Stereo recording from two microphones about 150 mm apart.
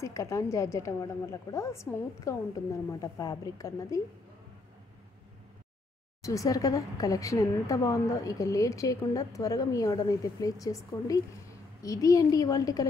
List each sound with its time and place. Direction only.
0.0 s a woman's voice: 20° left (ahead or behind)
6.2 s a woman's voice: 20° left (ahead or behind)